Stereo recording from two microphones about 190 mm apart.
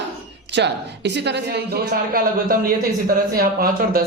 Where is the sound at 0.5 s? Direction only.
65° right (ahead or behind).